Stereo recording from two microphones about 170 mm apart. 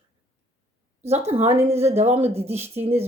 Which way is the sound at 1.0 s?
40° right (ahead or behind).